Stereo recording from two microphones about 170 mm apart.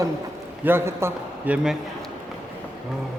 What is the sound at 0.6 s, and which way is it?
A man's voice, 15° right (ahead or behind).